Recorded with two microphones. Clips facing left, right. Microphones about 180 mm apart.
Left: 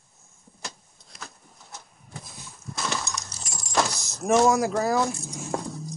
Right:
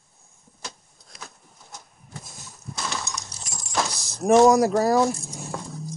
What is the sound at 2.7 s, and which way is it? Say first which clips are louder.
Keys jangling: left 1 dB; centre (ahead or behind).